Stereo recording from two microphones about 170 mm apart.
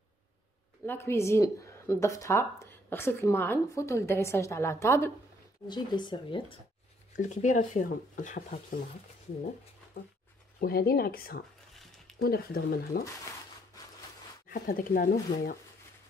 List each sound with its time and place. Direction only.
0.8 s speech: 15° left (ahead or behind)
5.7 s speech: 25° left (ahead or behind)
7.2 s speech: 45° left (ahead or behind)
10.6 s speech: 65° left (ahead or behind)
14.5 s speech: 55° left (ahead or behind)